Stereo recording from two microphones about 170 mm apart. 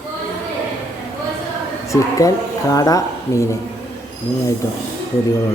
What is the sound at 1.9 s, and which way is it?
Speech, 20° left (ahead or behind).